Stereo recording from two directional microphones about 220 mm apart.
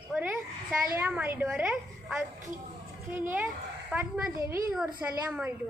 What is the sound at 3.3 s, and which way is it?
A child's voice, 5° right (ahead or behind).